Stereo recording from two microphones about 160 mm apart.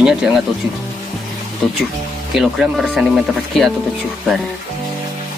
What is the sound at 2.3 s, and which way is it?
Speech, centre (ahead or behind).